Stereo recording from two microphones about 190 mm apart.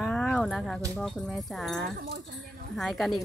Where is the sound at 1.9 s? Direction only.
60° right (ahead or behind).